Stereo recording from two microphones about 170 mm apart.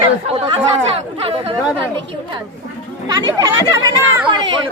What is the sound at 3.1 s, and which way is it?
Speech, 20° right (ahead or behind).